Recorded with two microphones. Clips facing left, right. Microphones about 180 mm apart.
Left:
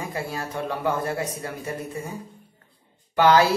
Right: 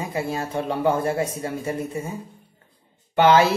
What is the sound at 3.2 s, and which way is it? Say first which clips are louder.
Speech: right 1 dB; 25° right (ahead or behind).